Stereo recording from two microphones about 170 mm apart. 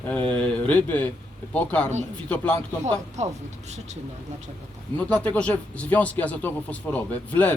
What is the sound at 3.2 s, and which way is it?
Speech, 40° right (ahead or behind).